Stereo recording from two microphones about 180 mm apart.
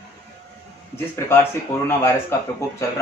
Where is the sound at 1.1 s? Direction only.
15° left (ahead or behind).